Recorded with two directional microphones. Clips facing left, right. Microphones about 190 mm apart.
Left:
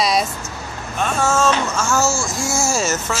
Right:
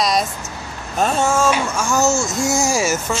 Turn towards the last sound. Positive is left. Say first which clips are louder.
# right 2 dB
turn(degrees=-10)  # may be behind; listen again after turning